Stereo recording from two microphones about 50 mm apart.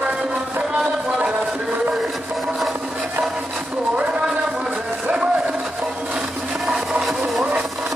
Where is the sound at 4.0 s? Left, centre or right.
Right.